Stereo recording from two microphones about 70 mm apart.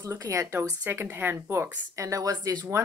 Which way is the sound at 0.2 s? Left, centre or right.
Right.